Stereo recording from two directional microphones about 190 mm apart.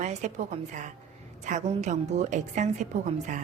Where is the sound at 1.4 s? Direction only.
40° right (ahead or behind).